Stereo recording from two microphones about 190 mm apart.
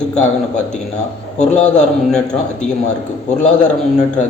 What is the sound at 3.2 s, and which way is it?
Speech, 40° left (ahead or behind).